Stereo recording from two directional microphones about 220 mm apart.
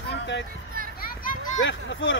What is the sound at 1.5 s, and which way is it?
Speech, 60° left (ahead or behind).